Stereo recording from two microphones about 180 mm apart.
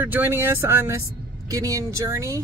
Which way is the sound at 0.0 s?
10° right (ahead or behind).